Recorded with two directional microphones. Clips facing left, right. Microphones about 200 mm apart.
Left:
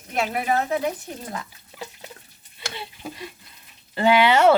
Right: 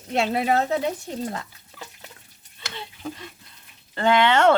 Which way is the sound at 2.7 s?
10° left (ahead or behind).